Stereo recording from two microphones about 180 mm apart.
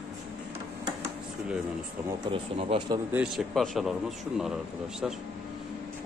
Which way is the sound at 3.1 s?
5° right (ahead or behind).